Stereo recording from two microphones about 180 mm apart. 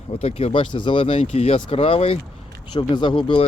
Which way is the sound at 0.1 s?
35° left (ahead or behind).